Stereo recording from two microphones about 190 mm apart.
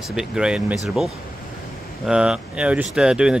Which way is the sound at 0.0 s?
Centre (ahead or behind).